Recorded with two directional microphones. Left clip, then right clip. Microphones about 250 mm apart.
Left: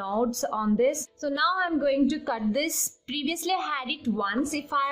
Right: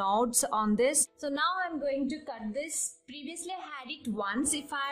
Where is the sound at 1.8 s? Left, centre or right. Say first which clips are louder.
Left 7 dB; centre.